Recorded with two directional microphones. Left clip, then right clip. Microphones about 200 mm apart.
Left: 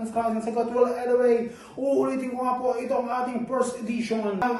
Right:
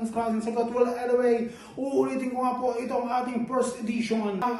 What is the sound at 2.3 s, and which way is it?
Speech, 15° right (ahead or behind).